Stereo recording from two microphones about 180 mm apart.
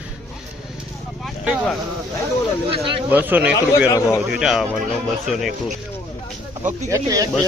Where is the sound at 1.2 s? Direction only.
5° right (ahead or behind).